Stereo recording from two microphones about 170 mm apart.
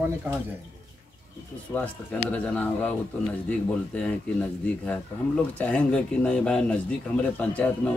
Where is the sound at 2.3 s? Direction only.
10° left (ahead or behind).